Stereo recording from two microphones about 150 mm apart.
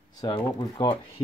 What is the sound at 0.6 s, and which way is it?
Speech, 30° left (ahead or behind).